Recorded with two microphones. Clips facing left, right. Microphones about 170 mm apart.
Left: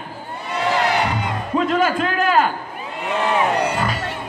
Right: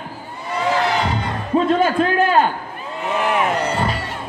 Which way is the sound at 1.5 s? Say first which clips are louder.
Right 3 dB; 30° right (ahead or behind).